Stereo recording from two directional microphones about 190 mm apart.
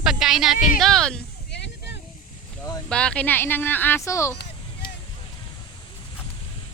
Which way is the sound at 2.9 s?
5° left (ahead or behind).